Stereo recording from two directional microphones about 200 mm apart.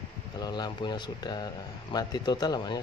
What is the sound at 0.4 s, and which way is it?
A man's voice, 20° left (ahead or behind).